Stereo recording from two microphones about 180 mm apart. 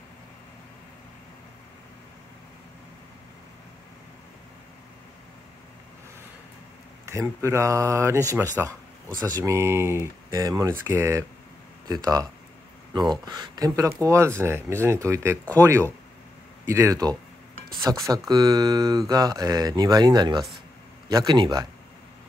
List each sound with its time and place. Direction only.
7.1 s speech: 15° right (ahead or behind)
16.6 s speech: 15° right (ahead or behind)